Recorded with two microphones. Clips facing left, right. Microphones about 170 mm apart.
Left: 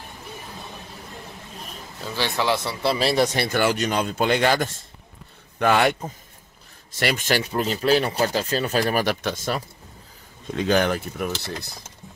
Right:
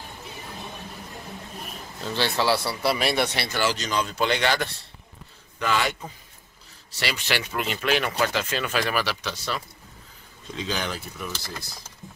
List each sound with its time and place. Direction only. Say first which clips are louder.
2.0 s speech: even; 15° left (ahead or behind)
2.8 s speech: left 3 dB; 30° left (ahead or behind)
3.3 s speech: left 5 dB; 50° left (ahead or behind)
5.6 s speech: left 6 dB; 55° left (ahead or behind)